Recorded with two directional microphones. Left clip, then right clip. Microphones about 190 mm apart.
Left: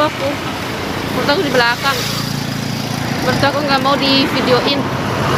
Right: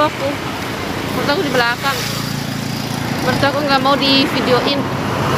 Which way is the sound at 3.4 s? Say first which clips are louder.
Even; 10° right (ahead or behind).